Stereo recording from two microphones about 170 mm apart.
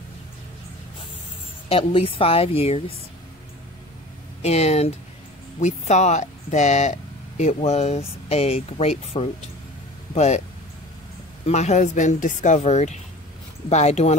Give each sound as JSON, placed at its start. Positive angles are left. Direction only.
{"t": 1.7, "sound": "speech", "side_deg": 35}
{"t": 4.4, "sound": "speech", "side_deg": 40}
{"t": 11.4, "sound": "speech", "side_deg": 40}